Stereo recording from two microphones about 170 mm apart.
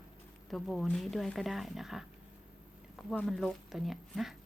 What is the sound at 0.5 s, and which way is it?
Speech, centre (ahead or behind).